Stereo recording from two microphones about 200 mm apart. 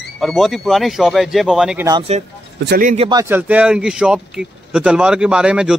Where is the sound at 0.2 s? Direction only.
Centre (ahead or behind).